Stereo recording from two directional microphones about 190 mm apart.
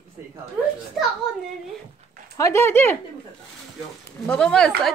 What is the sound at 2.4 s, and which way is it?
Speech, 15° left (ahead or behind).